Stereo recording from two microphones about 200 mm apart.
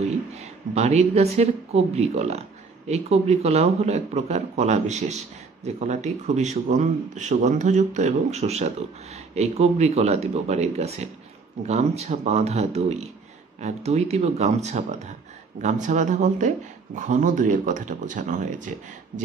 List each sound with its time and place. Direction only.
0.0 s a woman's voice: 35° right (ahead or behind)